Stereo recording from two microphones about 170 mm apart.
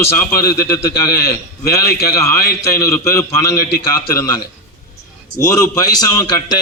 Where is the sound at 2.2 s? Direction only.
20° left (ahead or behind).